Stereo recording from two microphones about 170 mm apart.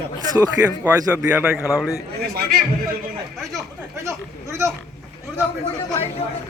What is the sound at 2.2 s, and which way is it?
Speech, 65° right (ahead or behind).